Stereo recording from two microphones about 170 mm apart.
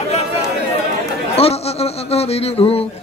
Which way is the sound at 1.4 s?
35° left (ahead or behind).